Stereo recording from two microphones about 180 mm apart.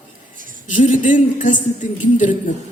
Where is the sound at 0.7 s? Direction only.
45° left (ahead or behind).